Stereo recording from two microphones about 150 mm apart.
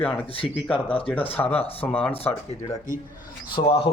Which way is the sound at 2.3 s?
10° left (ahead or behind).